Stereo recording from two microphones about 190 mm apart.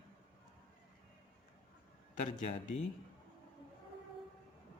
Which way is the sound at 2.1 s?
40° left (ahead or behind).